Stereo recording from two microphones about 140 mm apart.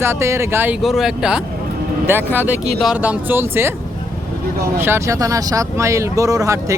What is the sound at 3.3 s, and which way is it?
Speech, 15° right (ahead or behind).